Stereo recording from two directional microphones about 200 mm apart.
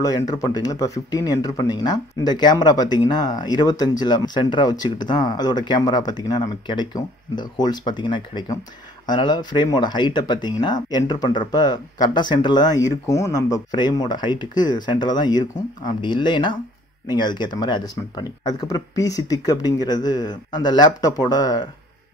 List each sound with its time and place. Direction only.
0.0 s speech: 20° left (ahead or behind)